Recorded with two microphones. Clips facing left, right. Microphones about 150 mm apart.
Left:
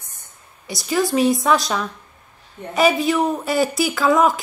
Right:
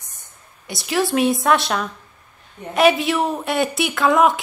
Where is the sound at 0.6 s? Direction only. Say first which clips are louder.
Left 1 dB; centre (ahead or behind).